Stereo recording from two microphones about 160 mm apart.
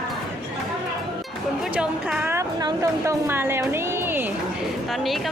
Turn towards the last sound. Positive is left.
turn(degrees=0)  # may be behind; listen again after turning